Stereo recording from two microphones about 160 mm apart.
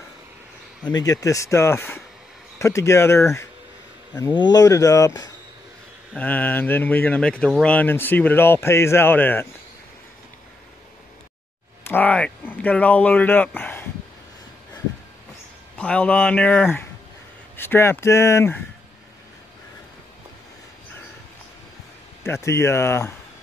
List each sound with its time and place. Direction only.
0.8 s speech: 25° left (ahead or behind)
6.1 s speech: 10° left (ahead or behind)
11.8 s speech: 10° left (ahead or behind)
13.6 s a sound: 10° left (ahead or behind)
15.8 s speech: 10° left (ahead or behind)
22.2 s speech: 15° left (ahead or behind)